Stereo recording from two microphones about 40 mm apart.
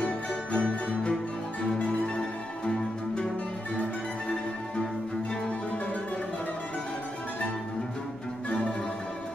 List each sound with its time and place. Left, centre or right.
0.0 s music: left
1.9 s music: left